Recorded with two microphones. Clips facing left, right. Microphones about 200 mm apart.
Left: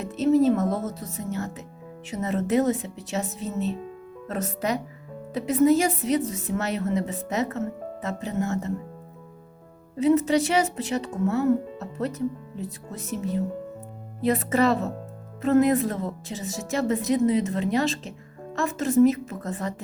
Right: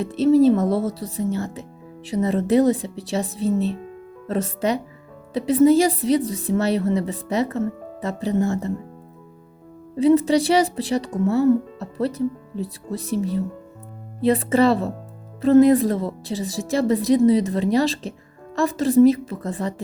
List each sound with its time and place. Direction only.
0.0 s speech: 30° right (ahead or behind)
10.0 s speech: 30° right (ahead or behind)